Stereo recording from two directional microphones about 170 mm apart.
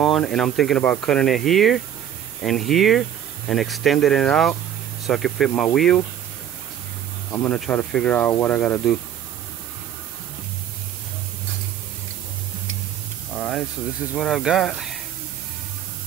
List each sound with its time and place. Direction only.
0.0 s speech: centre (ahead or behind)
7.2 s speech: 10° left (ahead or behind)
13.3 s sizzle: centre (ahead or behind)
14.1 s speech: centre (ahead or behind)